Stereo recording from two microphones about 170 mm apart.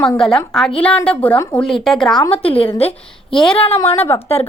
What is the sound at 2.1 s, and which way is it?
A woman's voice, 30° left (ahead or behind).